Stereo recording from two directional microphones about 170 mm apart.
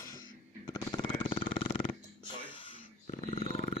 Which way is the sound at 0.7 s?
20° left (ahead or behind).